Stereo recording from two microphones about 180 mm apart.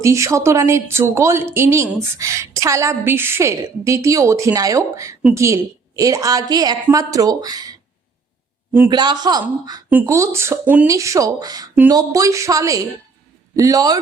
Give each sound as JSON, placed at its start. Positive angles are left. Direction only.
{"t": 0.0, "sound": "speech", "side_deg": -15}
{"t": 8.9, "sound": "speech", "side_deg": -25}